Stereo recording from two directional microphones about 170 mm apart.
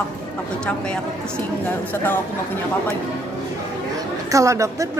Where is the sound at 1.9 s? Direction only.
10° left (ahead or behind).